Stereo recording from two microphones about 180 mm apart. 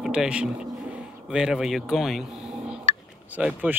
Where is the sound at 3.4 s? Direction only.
10° right (ahead or behind).